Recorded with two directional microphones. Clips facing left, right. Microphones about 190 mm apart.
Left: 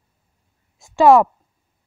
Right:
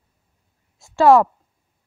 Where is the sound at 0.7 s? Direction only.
15° left (ahead or behind).